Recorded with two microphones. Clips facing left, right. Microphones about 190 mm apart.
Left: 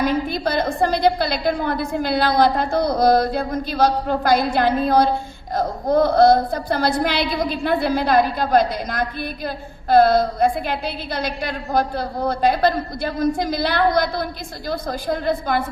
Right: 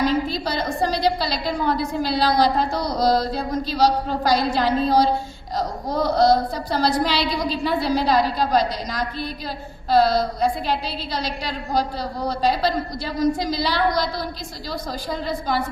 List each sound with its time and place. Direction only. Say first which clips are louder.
0.0 s a woman's voice: left 1 dB; 55° left (ahead or behind)